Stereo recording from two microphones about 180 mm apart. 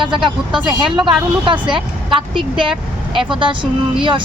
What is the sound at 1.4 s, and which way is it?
Speech, 30° right (ahead or behind).